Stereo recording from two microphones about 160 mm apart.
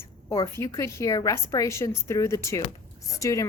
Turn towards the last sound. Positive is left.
turn(degrees=20)  # may be behind; listen again after turning